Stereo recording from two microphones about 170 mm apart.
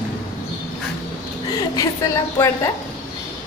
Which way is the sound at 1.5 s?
20° left (ahead or behind).